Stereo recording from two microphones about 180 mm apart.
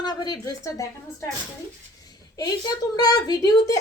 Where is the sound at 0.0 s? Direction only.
20° left (ahead or behind).